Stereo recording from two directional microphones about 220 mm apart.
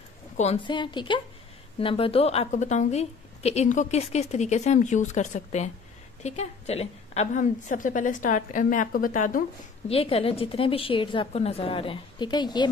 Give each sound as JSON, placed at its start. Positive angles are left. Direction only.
{"t": 0.4, "sound": "a woman's voice", "side_deg": 25}
{"t": 9.8, "sound": "a woman's voice", "side_deg": 25}